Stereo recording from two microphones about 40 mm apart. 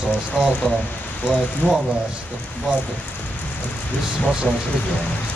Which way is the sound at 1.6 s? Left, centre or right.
Left.